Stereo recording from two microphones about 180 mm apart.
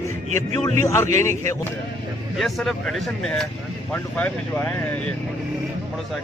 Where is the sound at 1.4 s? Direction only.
15° left (ahead or behind).